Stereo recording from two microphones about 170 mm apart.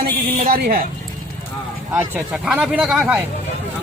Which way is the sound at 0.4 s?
55° right (ahead or behind).